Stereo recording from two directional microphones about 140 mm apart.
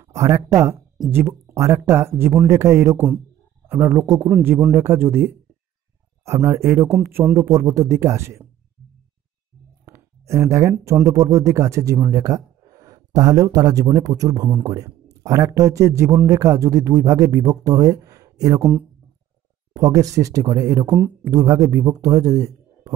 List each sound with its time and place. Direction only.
0.0 s speech: 20° right (ahead or behind)
9.8 s a sound: 20° right (ahead or behind)
11.1 s speech: 25° right (ahead or behind)
18.6 s speech: 10° right (ahead or behind)
19.7 s speech: 25° right (ahead or behind)
20.9 s speech: 5° right (ahead or behind)
21.3 s speech: 25° right (ahead or behind)